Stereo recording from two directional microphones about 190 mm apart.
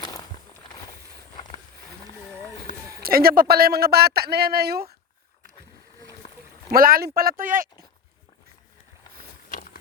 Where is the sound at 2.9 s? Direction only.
50° right (ahead or behind).